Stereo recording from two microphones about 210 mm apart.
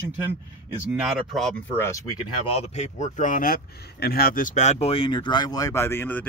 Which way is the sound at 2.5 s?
30° left (ahead or behind).